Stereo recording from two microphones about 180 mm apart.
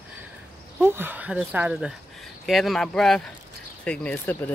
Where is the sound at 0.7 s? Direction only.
10° right (ahead or behind).